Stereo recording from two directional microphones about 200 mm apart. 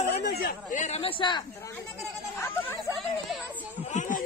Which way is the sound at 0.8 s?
30° left (ahead or behind).